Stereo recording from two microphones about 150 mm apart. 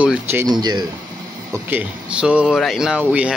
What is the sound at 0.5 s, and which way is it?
Speech, 30° right (ahead or behind).